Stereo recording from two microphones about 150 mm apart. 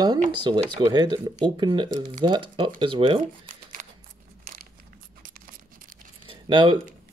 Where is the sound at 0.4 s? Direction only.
30° right (ahead or behind).